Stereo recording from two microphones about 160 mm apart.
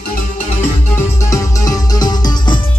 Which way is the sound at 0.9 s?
20° left (ahead or behind).